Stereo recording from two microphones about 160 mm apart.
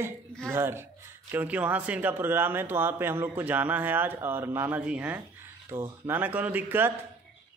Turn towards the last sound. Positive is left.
turn(degrees=-10)  # may be behind; listen again after turning